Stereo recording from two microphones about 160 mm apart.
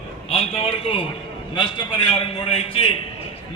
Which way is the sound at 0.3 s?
35° left (ahead or behind).